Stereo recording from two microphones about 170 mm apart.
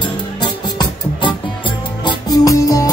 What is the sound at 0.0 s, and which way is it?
Music, 25° left (ahead or behind).